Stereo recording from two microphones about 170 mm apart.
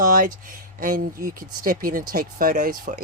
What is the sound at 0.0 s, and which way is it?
Speech, 55° right (ahead or behind).